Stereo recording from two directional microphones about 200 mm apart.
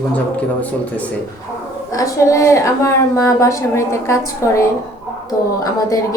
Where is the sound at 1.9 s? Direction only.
15° left (ahead or behind).